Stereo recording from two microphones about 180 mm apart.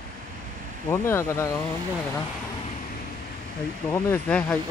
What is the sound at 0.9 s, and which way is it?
Speech, 15° left (ahead or behind).